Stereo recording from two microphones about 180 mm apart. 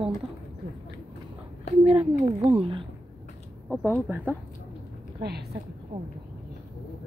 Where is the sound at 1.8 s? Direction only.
35° right (ahead or behind).